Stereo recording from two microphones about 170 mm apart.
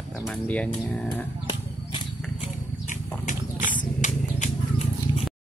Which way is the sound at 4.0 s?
45° left (ahead or behind).